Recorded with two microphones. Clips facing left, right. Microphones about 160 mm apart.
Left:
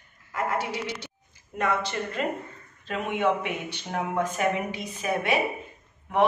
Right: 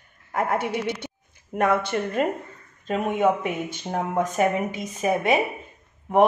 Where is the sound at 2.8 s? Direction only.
40° right (ahead or behind).